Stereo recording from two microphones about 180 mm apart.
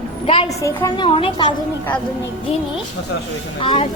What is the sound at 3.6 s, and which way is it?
Speech, 30° left (ahead or behind).